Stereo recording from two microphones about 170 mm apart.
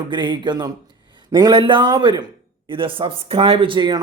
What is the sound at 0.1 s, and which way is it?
A man's voice, 25° right (ahead or behind).